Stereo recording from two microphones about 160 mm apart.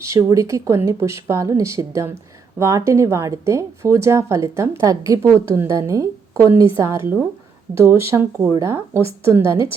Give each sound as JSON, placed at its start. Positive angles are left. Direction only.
{"t": 0.0, "sound": "speech", "side_deg": -20}